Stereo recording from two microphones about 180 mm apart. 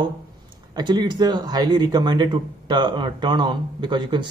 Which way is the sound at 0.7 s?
25° right (ahead or behind).